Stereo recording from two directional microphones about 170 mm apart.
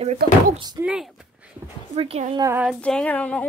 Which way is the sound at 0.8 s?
5° right (ahead or behind).